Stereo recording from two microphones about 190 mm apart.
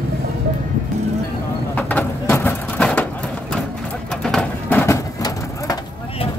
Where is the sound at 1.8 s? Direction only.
10° left (ahead or behind).